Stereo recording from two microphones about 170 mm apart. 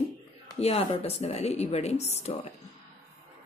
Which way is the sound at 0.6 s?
35° left (ahead or behind).